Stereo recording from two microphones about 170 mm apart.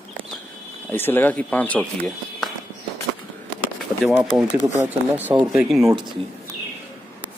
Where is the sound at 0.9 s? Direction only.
10° left (ahead or behind).